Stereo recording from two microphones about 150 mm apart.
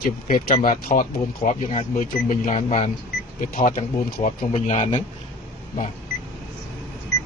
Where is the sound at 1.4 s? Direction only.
55° left (ahead or behind).